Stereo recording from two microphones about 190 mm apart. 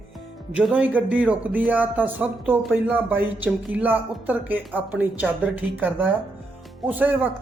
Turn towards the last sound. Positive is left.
turn(degrees=-10)  # may be behind; listen again after turning